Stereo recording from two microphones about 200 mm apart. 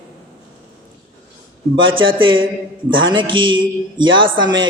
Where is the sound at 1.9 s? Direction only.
25° right (ahead or behind).